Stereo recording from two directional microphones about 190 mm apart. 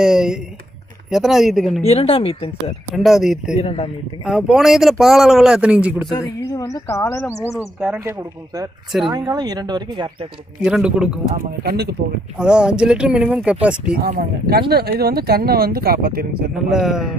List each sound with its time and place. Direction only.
0.0 s speech: 5° right (ahead or behind)
1.8 s speech: 35° left (ahead or behind)
2.6 s speech: centre (ahead or behind)
3.5 s speech: 30° left (ahead or behind)
4.2 s speech: centre (ahead or behind)
6.5 s speech: 15° left (ahead or behind)
7.5 s speech: 5° right (ahead or behind); by 10.1 s 25° right (ahead or behind)
10.6 s speech: 5° right (ahead or behind)
11.3 s speech: 55° right (ahead or behind)
12.4 s speech: 5° right (ahead or behind)
13.9 s speech: 55° right (ahead or behind)
16.7 s speech: centre (ahead or behind)